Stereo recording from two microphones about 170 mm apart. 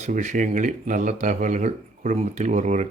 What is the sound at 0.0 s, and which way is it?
A man's voice, 45° right (ahead or behind).